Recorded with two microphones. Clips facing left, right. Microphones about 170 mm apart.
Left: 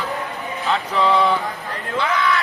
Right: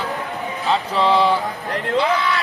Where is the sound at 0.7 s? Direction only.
30° right (ahead or behind).